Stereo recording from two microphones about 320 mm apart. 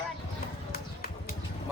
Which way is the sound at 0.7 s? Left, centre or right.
Left.